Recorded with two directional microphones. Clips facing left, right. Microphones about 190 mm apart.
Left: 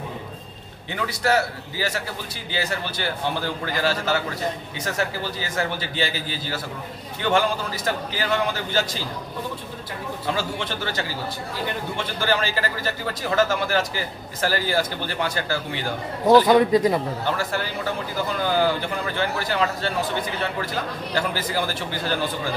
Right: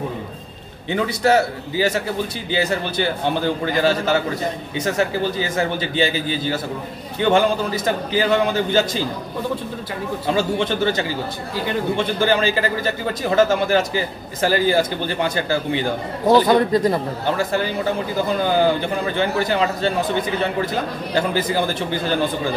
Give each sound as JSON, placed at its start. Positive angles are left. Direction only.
{"t": 0.9, "sound": "a man's voice", "side_deg": -20}
{"t": 10.3, "sound": "a man's voice", "side_deg": -20}
{"t": 16.4, "sound": "speech", "side_deg": 10}
{"t": 17.4, "sound": "a man's voice", "side_deg": -20}